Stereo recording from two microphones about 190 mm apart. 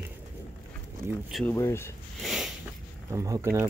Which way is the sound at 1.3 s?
10° left (ahead or behind).